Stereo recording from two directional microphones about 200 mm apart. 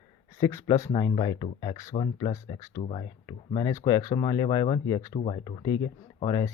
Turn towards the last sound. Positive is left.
turn(degrees=20)  # may be behind; listen again after turning